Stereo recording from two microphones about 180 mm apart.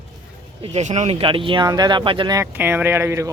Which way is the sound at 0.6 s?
35° right (ahead or behind).